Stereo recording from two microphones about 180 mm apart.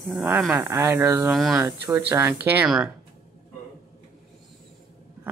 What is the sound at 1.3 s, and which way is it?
Speech, centre (ahead or behind).